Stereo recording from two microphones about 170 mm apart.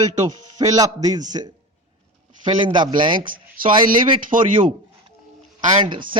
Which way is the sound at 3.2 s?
55° right (ahead or behind).